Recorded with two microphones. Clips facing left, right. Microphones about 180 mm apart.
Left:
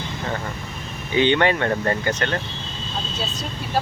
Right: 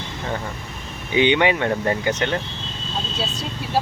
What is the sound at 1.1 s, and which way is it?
Speech, 15° right (ahead or behind).